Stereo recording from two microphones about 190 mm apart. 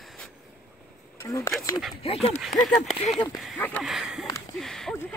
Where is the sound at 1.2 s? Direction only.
15° left (ahead or behind).